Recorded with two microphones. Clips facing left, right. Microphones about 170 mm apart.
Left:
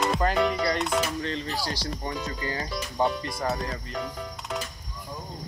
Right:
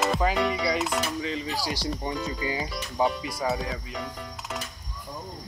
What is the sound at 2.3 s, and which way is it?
Speech, 15° right (ahead or behind).